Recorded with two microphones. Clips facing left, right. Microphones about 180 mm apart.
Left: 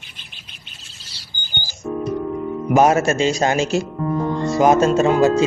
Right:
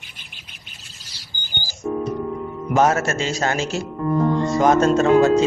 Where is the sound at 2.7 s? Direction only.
15° left (ahead or behind).